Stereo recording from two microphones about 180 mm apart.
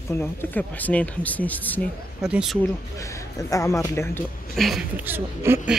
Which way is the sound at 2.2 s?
5° right (ahead or behind).